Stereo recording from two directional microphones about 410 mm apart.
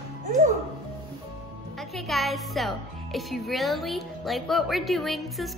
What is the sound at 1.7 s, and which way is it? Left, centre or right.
Speech, centre.